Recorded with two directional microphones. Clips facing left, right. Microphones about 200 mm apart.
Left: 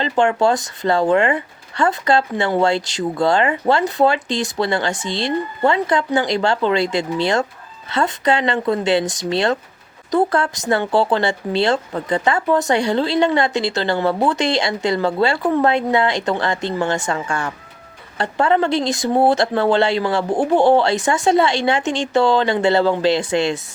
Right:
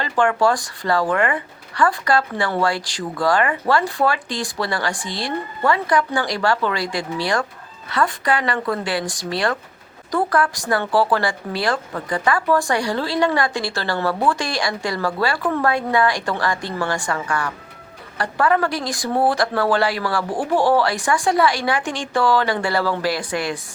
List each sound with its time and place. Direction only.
0.0 s speech: 25° left (ahead or behind)